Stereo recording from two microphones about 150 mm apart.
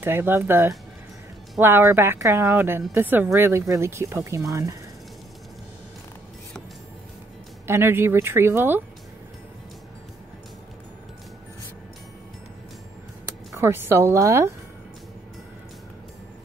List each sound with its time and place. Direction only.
0.0 s speech: 15° right (ahead or behind)
7.6 s speech: 15° right (ahead or behind)
13.6 s speech: 15° right (ahead or behind)